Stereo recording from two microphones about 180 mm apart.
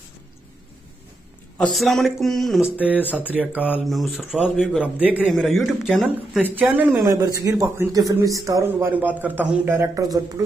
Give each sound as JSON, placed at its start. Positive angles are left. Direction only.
{"t": 1.6, "sound": "a man's voice", "side_deg": 0}